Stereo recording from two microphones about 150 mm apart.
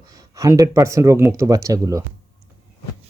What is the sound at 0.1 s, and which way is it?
Speech, 25° right (ahead or behind).